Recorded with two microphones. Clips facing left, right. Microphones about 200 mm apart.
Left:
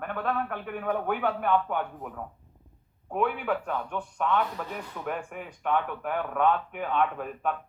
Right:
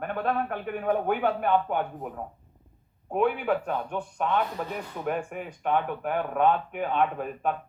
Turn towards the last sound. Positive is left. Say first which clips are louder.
# right 2 dB
turn(degrees=-25)  # may be behind; listen again after turning